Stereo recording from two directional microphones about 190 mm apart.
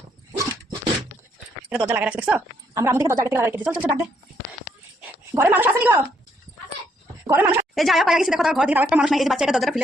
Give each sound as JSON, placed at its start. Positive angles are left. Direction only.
{"t": 1.7, "sound": "a woman's voice", "side_deg": -10}
{"t": 5.3, "sound": "a woman's voice", "side_deg": -10}
{"t": 7.3, "sound": "a woman's voice", "side_deg": -10}